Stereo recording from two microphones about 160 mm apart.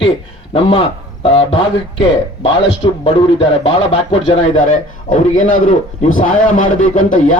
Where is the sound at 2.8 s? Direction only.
25° left (ahead or behind).